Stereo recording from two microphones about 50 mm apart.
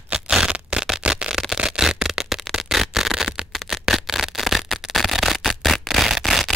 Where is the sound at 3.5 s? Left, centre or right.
Centre.